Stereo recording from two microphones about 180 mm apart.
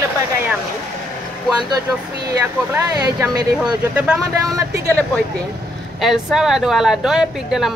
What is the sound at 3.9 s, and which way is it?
Speech, 5° right (ahead or behind).